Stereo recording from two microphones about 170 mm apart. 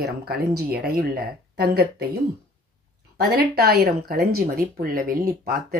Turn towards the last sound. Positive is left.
turn(degrees=-60)  # may be behind; listen again after turning